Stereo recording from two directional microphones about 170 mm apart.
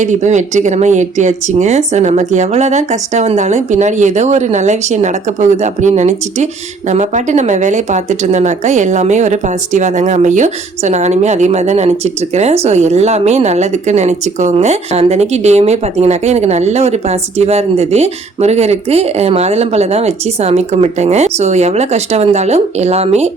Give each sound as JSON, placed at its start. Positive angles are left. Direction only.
{"t": 0.0, "sound": "speech", "side_deg": -45}